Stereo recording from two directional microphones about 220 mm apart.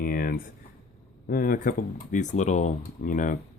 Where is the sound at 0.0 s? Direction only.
40° left (ahead or behind).